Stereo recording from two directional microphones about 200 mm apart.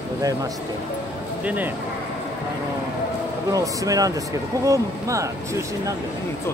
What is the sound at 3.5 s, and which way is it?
Speech, 15° right (ahead or behind).